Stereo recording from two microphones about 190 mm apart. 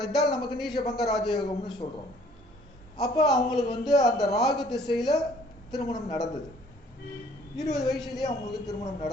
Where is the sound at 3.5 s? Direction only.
25° left (ahead or behind).